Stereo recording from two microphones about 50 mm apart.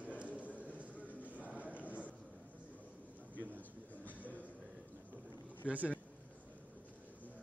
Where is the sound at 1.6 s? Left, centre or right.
Right.